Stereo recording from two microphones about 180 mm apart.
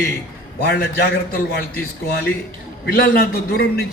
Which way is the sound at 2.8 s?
60° left (ahead or behind).